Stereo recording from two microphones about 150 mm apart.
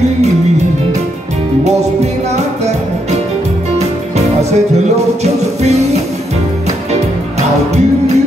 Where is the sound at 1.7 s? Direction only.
50° right (ahead or behind).